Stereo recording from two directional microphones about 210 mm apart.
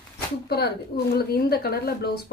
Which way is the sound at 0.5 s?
50° left (ahead or behind).